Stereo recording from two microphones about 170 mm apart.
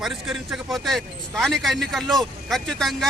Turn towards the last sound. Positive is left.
turn(degrees=0)  # may be behind; listen again after turning